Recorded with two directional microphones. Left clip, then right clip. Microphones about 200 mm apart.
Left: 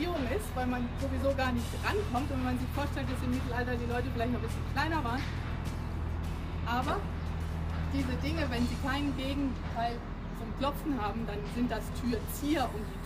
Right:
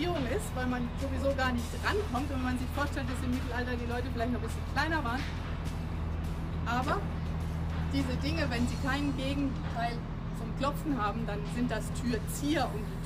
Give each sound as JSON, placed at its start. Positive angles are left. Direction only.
{"t": 0.6, "sound": "speech", "side_deg": 0}
{"t": 6.7, "sound": "speech", "side_deg": 0}
{"t": 8.0, "sound": "speech", "side_deg": 0}
{"t": 10.6, "sound": "speech", "side_deg": 0}